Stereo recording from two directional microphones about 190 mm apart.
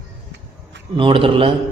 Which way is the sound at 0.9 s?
25° right (ahead or behind).